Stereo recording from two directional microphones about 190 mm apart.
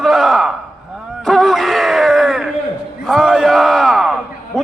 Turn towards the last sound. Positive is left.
turn(degrees=0)  # may be behind; listen again after turning